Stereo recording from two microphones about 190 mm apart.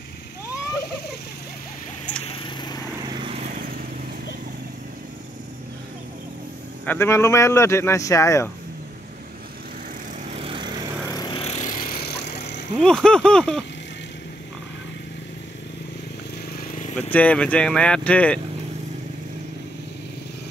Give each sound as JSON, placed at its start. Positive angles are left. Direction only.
{"t": 2.2, "sound": "a sound", "side_deg": 25}
{"t": 3.1, "sound": "vehicle", "side_deg": -25}
{"t": 3.3, "sound": "vehicle", "side_deg": -45}
{"t": 6.9, "sound": "speech", "side_deg": 15}
{"t": 10.3, "sound": "lawn mower", "side_deg": -30}
{"t": 11.1, "sound": "vehicle", "side_deg": 20}
{"t": 12.4, "sound": "a sound", "side_deg": 65}
{"t": 12.7, "sound": "speech", "side_deg": 5}
{"t": 16.5, "sound": "vehicle", "side_deg": 45}
{"t": 16.9, "sound": "speech", "side_deg": 5}